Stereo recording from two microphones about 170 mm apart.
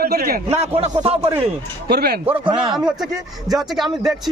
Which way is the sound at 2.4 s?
30° right (ahead or behind).